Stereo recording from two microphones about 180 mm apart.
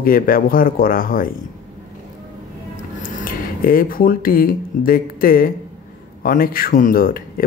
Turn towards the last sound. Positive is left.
turn(degrees=55)  # may be behind; listen again after turning